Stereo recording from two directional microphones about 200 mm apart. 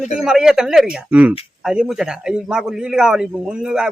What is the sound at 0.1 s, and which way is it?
Speech, centre (ahead or behind).